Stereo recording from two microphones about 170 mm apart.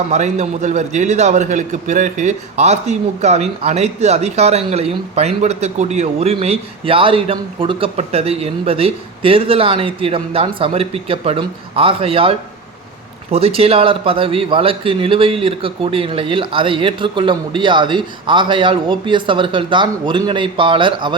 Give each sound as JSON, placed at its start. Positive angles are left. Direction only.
{"t": 0.1, "sound": "a man's voice", "side_deg": -40}